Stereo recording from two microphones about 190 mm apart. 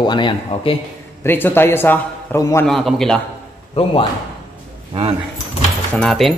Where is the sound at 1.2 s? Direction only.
10° left (ahead or behind).